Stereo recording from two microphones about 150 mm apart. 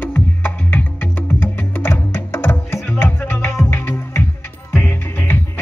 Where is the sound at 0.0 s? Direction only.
10° left (ahead or behind).